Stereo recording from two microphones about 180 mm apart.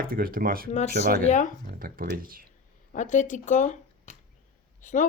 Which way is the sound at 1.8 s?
55° right (ahead or behind).